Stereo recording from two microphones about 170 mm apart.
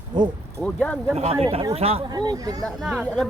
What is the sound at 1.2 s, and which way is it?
Speech, 35° right (ahead or behind).